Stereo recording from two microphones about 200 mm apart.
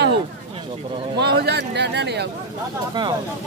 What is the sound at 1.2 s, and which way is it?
Speech, 55° right (ahead or behind).